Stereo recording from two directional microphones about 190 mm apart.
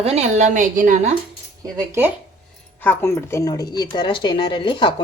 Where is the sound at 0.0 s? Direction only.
35° right (ahead or behind).